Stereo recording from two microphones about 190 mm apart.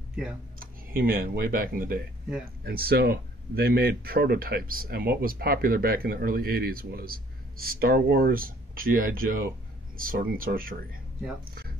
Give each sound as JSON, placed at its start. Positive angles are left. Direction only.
{"t": 0.1, "sound": "speech", "side_deg": -5}
{"t": 0.6, "sound": "speech", "side_deg": -50}